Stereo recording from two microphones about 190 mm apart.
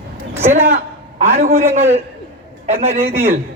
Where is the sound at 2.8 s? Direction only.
30° right (ahead or behind).